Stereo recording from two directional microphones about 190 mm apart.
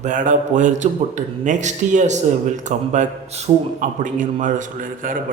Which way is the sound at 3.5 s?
30° right (ahead or behind).